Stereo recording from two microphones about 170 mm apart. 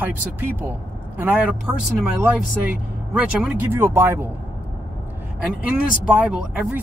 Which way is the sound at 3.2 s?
10° right (ahead or behind).